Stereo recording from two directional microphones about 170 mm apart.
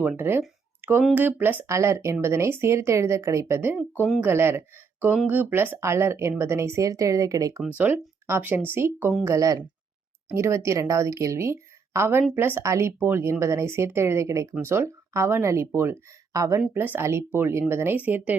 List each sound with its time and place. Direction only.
0.0 s speech: 15° right (ahead or behind)